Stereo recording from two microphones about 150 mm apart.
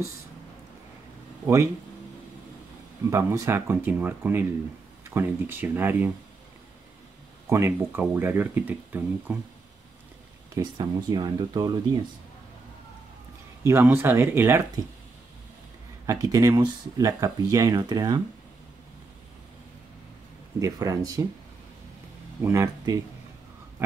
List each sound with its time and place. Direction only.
1.4 s a man's voice: 20° right (ahead or behind)
3.1 s speech: 20° right (ahead or behind)
7.4 s speech: 20° right (ahead or behind)
10.5 s speech: 25° right (ahead or behind)
13.7 s speech: 15° right (ahead or behind)
16.1 s speech: 20° right (ahead or behind)
20.5 s speech: 20° right (ahead or behind)
22.4 s speech: 20° right (ahead or behind)